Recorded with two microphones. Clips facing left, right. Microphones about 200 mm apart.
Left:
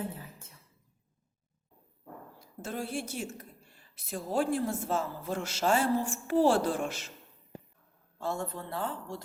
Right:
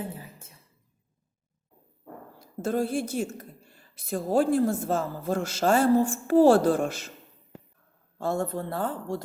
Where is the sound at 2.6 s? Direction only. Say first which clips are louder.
Right 9 dB; 40° right (ahead or behind).